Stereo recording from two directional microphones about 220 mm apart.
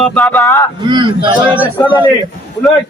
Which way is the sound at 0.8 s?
20° right (ahead or behind).